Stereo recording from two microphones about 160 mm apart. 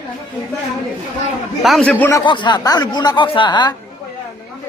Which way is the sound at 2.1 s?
30° left (ahead or behind).